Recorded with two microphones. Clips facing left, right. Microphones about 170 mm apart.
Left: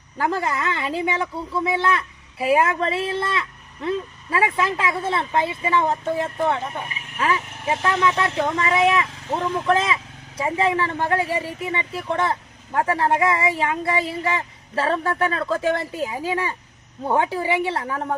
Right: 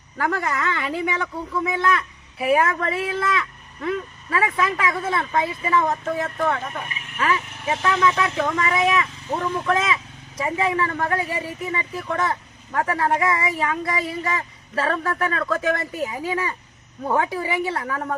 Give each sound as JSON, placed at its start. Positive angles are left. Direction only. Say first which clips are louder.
{"t": 0.2, "sound": "speech", "louder": "left 1 dB", "side_deg": 30}